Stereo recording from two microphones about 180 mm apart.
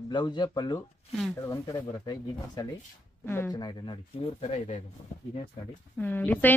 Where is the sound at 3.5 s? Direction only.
25° left (ahead or behind); by 4.8 s 40° left (ahead or behind).